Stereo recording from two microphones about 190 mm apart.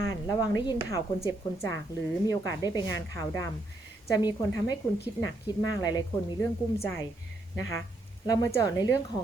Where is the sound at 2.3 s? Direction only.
20° left (ahead or behind).